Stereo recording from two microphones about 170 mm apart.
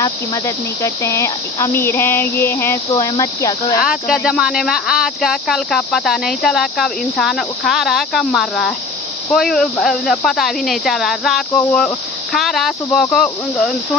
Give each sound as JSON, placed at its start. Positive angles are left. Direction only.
{"t": 0.0, "sound": "speech", "side_deg": 20}
{"t": 3.8, "sound": "speech", "side_deg": 0}